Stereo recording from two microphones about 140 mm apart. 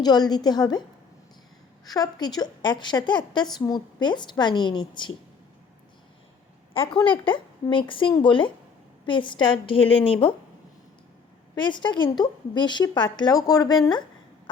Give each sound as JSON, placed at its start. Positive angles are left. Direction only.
{"t": 0.0, "sound": "a woman's voice", "side_deg": 30}
{"t": 7.3, "sound": "speech", "side_deg": 35}
{"t": 11.5, "sound": "speech", "side_deg": 35}